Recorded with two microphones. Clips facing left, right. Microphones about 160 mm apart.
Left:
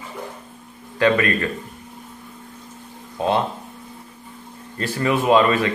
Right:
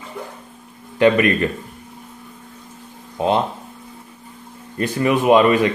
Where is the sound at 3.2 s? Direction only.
20° right (ahead or behind).